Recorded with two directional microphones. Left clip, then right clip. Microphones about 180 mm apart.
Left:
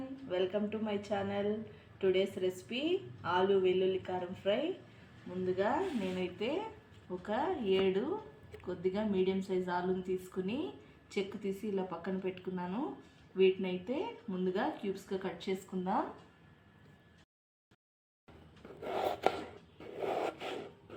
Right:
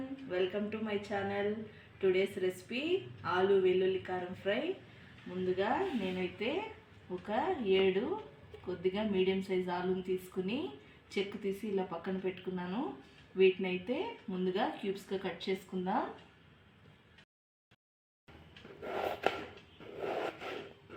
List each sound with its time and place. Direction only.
0.3 s speech: centre (ahead or behind)
18.9 s a sound: 15° left (ahead or behind)
20.0 s scrape: 15° left (ahead or behind)